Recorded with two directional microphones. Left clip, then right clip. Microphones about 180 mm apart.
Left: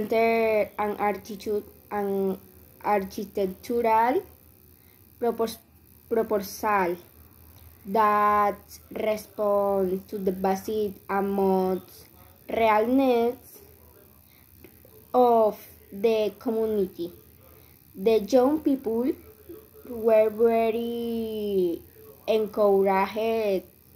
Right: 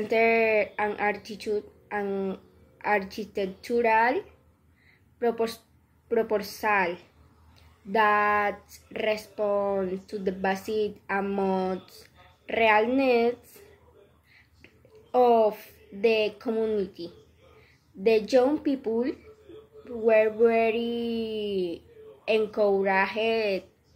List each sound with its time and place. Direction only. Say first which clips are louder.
0.1 s a woman's voice: even; 10° right (ahead or behind)
5.2 s a woman's voice: even; 10° right (ahead or behind)
14.6 s a sound: left 3 dB; 10° right (ahead or behind)
16.0 s speech: even; 10° right (ahead or behind)
18.3 s speech: left 1 dB; 10° right (ahead or behind)